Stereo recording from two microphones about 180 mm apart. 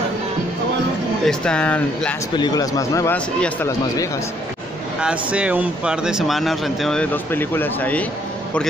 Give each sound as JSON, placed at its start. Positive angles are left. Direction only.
{"t": 1.2, "sound": "speech", "side_deg": 5}
{"t": 2.3, "sound": "speech", "side_deg": 20}
{"t": 5.0, "sound": "speech", "side_deg": -5}